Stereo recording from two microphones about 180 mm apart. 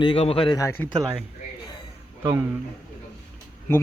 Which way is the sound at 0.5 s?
15° left (ahead or behind).